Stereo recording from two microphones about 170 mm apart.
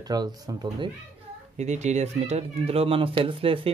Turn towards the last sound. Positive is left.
turn(degrees=-30)  # may be behind; listen again after turning